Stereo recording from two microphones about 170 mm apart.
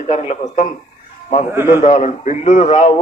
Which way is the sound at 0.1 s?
40° left (ahead or behind).